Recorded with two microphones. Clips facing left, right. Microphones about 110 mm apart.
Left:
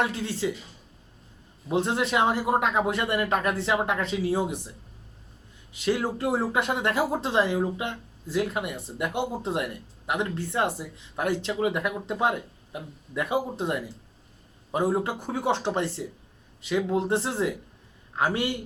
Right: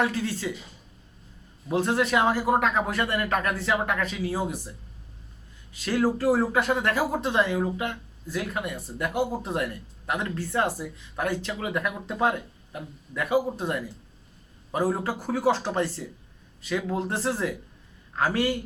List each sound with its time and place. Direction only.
0.0 s speech: 25° left (ahead or behind)
1.7 s speech: 20° left (ahead or behind)
5.7 s a man's voice: 20° left (ahead or behind)